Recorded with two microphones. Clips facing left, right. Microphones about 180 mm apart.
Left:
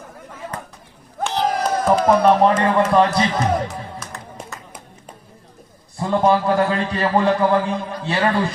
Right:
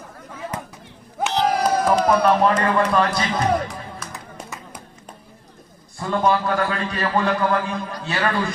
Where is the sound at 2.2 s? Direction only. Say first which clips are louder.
Left 3 dB; 25° left (ahead or behind).